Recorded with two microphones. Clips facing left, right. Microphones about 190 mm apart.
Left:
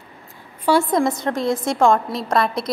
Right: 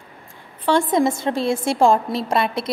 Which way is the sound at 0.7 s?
10° left (ahead or behind).